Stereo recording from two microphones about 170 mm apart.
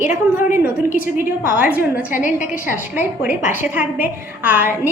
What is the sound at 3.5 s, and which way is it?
A woman's voice, 10° right (ahead or behind).